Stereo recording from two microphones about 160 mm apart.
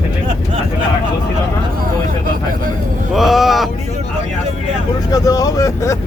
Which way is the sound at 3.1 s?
Centre (ahead or behind).